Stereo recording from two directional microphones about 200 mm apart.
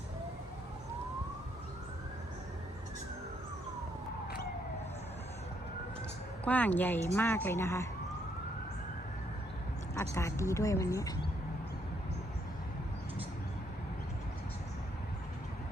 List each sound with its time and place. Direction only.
6.4 s speech: 5° left (ahead or behind)
9.9 s speech: 15° left (ahead or behind)